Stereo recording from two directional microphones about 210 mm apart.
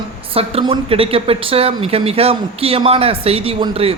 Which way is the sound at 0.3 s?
25° right (ahead or behind).